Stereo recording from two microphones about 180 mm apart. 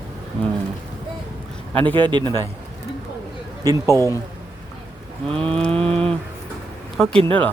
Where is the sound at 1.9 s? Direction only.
25° right (ahead or behind).